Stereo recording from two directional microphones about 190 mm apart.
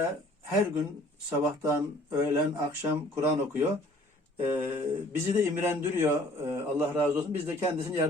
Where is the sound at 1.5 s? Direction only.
15° right (ahead or behind).